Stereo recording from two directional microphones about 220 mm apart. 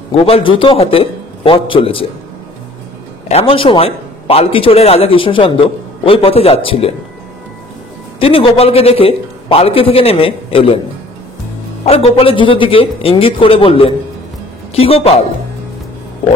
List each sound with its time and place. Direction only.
0.1 s a man's voice: 25° left (ahead or behind)
3.3 s a man's voice: 25° left (ahead or behind)
8.2 s a man's voice: 25° left (ahead or behind)
11.8 s a man's voice: 25° left (ahead or behind)